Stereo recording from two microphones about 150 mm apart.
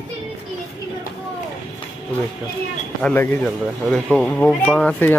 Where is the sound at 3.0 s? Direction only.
15° left (ahead or behind).